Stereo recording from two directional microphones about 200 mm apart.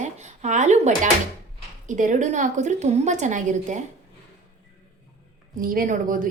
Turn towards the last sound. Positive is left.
turn(degrees=-40)  # may be behind; listen again after turning